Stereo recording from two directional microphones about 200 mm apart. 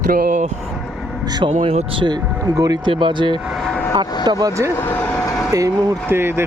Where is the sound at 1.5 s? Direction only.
35° right (ahead or behind).